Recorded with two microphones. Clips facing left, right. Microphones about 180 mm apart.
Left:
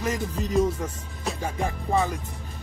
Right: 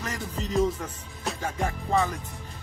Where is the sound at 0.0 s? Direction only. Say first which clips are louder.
Left 5 dB; 15° left (ahead or behind).